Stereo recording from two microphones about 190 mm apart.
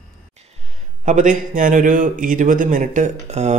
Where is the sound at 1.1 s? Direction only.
40° right (ahead or behind).